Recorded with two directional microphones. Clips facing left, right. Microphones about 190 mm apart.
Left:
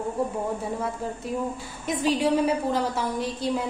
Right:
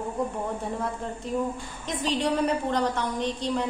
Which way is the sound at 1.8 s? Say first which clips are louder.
Left 4 dB; 10° left (ahead or behind).